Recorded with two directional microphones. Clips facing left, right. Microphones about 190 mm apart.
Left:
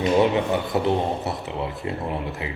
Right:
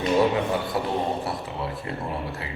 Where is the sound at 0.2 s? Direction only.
20° left (ahead or behind).